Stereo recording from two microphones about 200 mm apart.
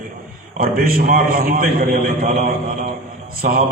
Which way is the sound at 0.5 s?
45° right (ahead or behind).